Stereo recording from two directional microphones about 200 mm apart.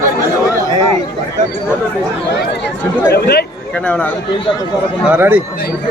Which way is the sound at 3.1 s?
50° left (ahead or behind).